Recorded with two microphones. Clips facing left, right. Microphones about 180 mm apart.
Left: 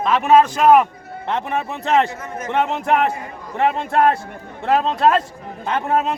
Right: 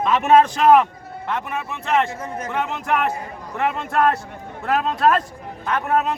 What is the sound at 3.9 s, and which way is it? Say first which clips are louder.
A man's voice: left 3 dB; 30° left (ahead or behind).